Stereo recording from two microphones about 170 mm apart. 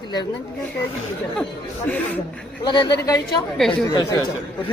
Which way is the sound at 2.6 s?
25° left (ahead or behind).